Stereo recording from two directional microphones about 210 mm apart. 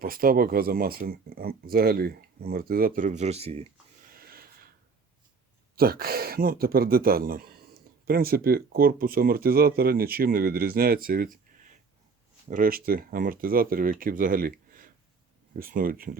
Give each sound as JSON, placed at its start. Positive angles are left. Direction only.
{"t": 0.0, "sound": "speech", "side_deg": -45}
{"t": 4.1, "sound": "gasp", "side_deg": -45}
{"t": 5.7, "sound": "speech", "side_deg": -45}
{"t": 12.5, "sound": "speech", "side_deg": -40}
{"t": 15.5, "sound": "speech", "side_deg": -40}